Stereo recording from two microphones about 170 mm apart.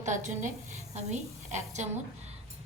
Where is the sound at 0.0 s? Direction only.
45° right (ahead or behind).